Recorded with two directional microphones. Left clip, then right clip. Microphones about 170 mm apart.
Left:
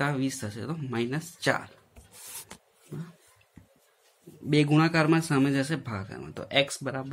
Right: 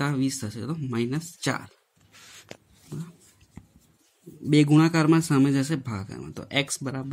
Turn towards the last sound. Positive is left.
turn(degrees=-40)  # may be behind; listen again after turning